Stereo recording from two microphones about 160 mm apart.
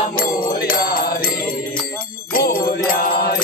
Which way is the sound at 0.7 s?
65° left (ahead or behind).